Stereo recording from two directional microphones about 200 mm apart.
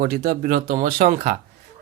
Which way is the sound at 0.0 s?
45° right (ahead or behind).